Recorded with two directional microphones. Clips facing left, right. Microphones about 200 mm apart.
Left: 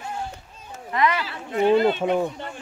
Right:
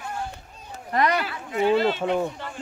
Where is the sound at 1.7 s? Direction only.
20° left (ahead or behind).